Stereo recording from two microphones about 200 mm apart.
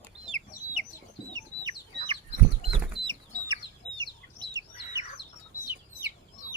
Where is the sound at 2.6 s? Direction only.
Centre (ahead or behind).